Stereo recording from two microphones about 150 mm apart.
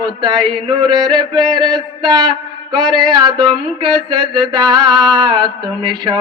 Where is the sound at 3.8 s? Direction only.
30° right (ahead or behind).